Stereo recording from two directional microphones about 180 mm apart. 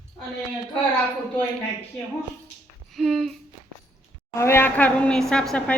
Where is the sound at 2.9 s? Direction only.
Centre (ahead or behind).